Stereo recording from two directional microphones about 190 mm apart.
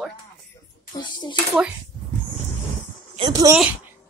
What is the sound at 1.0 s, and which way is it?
Speech, 25° left (ahead or behind).